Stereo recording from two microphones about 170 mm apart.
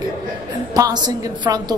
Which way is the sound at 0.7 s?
20° right (ahead or behind).